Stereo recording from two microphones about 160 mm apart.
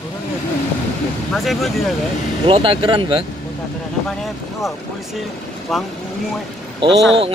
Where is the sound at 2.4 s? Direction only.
35° right (ahead or behind).